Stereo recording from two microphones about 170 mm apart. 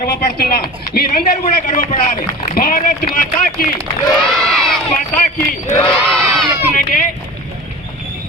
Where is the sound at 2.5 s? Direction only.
60° left (ahead or behind).